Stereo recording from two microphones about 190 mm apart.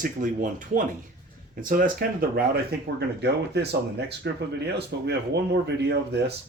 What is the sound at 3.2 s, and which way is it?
Speech, 60° right (ahead or behind).